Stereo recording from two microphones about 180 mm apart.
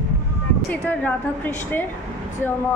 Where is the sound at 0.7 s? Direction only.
10° left (ahead or behind).